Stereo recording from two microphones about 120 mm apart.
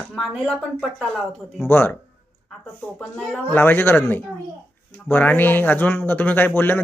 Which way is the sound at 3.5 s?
20° left (ahead or behind).